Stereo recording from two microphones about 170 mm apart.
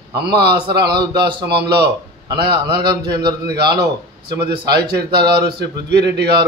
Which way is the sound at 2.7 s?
65° right (ahead or behind).